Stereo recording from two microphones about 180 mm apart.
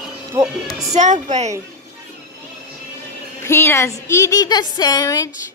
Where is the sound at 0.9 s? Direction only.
40° right (ahead or behind).